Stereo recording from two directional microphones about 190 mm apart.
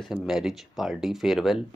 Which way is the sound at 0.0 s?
5° right (ahead or behind).